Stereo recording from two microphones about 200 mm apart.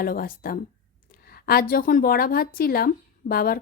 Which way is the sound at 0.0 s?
45° left (ahead or behind).